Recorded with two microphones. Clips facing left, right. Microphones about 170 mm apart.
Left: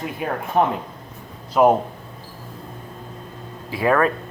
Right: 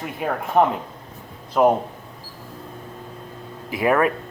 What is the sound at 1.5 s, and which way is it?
Speech, 5° left (ahead or behind).